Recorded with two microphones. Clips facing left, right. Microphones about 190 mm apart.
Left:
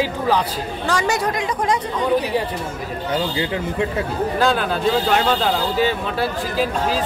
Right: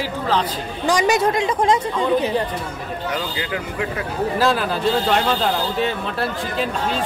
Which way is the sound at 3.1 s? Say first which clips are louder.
Left 5 dB; 25° left (ahead or behind).